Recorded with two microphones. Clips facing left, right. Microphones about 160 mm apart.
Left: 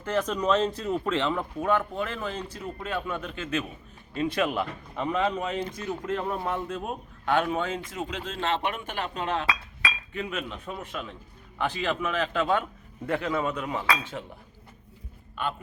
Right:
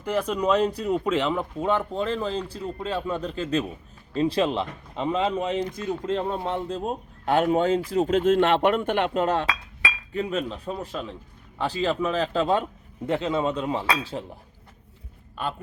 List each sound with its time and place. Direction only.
0.0 s speech: 10° right (ahead or behind); by 5.5 s 25° right (ahead or behind)
5.5 s speech: 15° right (ahead or behind)
6.1 s speech: 25° right (ahead or behind); by 9.2 s 60° right (ahead or behind)
9.2 s speech: 40° right (ahead or behind)